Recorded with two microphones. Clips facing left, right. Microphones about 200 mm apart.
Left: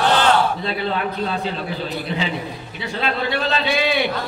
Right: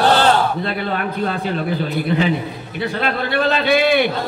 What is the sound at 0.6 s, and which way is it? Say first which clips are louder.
Speech: right 1 dB; 55° right (ahead or behind).